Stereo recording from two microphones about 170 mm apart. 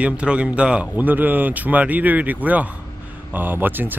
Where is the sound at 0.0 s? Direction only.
5° right (ahead or behind).